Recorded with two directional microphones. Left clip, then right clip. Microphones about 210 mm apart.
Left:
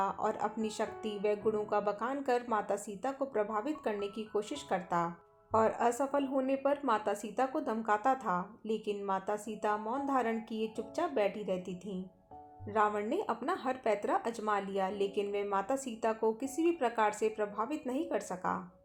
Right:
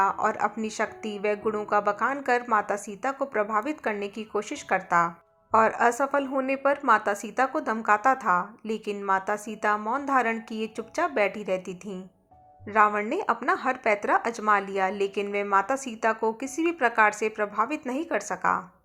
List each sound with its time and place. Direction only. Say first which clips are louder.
0.0 s speech: right 9 dB; 15° right (ahead or behind)